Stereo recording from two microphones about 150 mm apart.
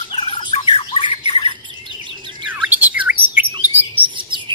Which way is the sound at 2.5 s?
10° right (ahead or behind).